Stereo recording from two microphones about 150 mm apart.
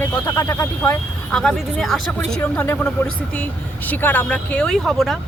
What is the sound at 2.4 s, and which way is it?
Speech, 15° left (ahead or behind).